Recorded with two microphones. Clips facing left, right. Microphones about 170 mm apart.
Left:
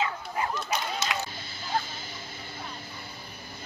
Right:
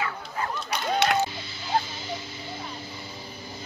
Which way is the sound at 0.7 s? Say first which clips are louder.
Right 6 dB; 70° right (ahead or behind).